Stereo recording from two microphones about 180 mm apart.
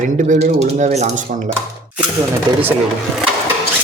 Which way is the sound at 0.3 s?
40° right (ahead or behind).